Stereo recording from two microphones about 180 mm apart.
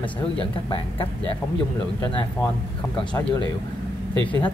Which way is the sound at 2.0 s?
30° left (ahead or behind).